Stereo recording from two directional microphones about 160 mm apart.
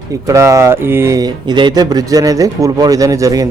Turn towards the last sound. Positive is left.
turn(degrees=-20)  # may be behind; listen again after turning